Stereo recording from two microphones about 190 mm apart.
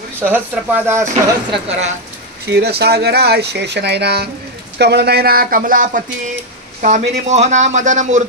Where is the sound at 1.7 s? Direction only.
35° right (ahead or behind).